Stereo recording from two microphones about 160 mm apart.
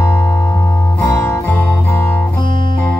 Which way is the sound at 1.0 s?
20° left (ahead or behind).